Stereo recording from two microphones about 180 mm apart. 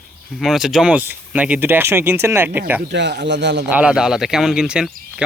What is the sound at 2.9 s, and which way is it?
Speech, 75° right (ahead or behind).